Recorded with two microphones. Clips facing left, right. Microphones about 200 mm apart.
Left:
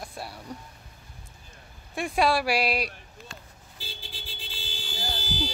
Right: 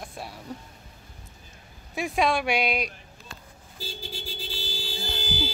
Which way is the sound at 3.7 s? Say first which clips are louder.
Right 7 dB; 45° right (ahead or behind).